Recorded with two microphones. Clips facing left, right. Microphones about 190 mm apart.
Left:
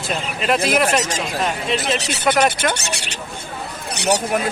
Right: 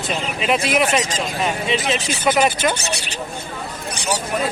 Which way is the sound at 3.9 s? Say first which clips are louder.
Left 5 dB; 65° left (ahead or behind).